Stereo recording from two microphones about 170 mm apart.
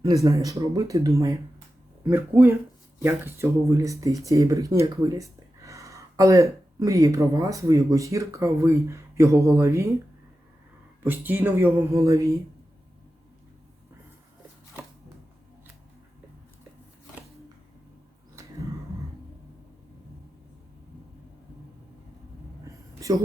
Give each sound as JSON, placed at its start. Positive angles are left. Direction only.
{"t": 0.0, "sound": "speech", "side_deg": -20}
{"t": 11.0, "sound": "speech", "side_deg": -10}
{"t": 23.0, "sound": "a sound", "side_deg": -20}